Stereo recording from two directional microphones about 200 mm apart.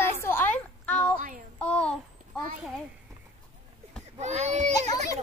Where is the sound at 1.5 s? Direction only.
5° left (ahead or behind).